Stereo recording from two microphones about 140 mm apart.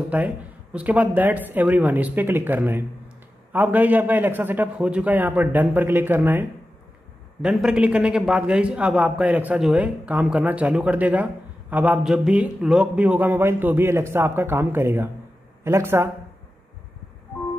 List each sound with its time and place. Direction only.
0.1 s a man's voice: 10° right (ahead or behind)
7.4 s a man's voice: 5° right (ahead or behind)